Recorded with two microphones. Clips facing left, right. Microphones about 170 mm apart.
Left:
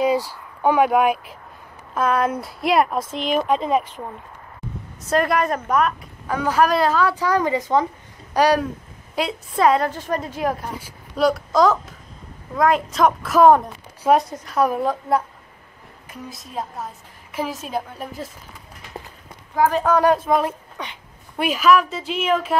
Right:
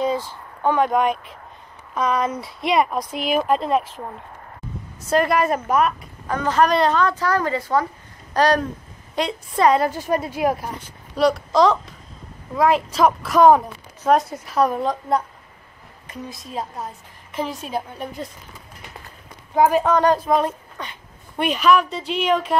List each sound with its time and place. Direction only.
0.7 s a woman's voice: 10° left (ahead or behind)
5.0 s a woman's voice: centre (ahead or behind)
6.3 s a woman's voice: 10° left (ahead or behind)
9.8 s speech: 10° right (ahead or behind)
10.8 s a woman's voice: centre (ahead or behind)
19.5 s a woman's voice: 20° right (ahead or behind)
19.8 s a woman's voice: 5° left (ahead or behind)